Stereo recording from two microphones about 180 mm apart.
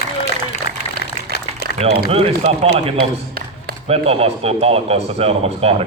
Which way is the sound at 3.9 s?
35° right (ahead or behind).